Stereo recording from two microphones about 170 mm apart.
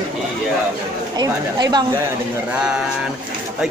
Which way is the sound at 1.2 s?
25° right (ahead or behind).